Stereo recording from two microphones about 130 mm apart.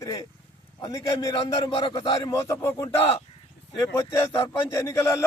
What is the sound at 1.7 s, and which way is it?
Speech, 40° left (ahead or behind).